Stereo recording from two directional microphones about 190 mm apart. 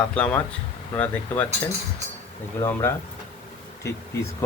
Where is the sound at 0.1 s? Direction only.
5° left (ahead or behind).